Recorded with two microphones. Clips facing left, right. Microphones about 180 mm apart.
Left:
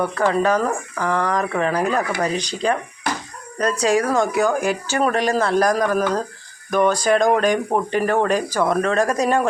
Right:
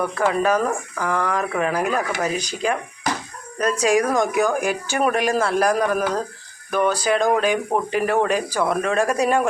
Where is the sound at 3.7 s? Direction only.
35° left (ahead or behind).